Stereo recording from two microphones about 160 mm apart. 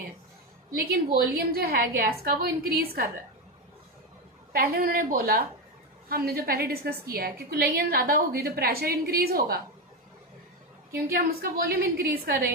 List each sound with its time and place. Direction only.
0.7 s a woman's voice: 70° right (ahead or behind)
4.5 s a woman's voice: 70° right (ahead or behind)
10.9 s a woman's voice: 65° right (ahead or behind)